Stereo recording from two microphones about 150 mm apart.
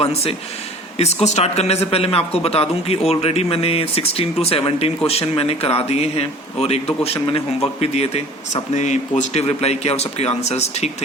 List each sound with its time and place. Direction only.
0.0 s a man's voice: 45° left (ahead or behind)